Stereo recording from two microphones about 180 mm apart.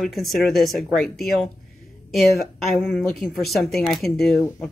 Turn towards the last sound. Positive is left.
turn(degrees=0)  # may be behind; listen again after turning